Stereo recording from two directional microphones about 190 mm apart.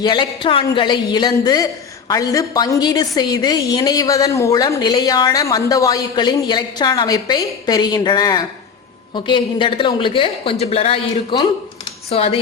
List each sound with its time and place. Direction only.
0.0 s a woman's voice: 25° left (ahead or behind)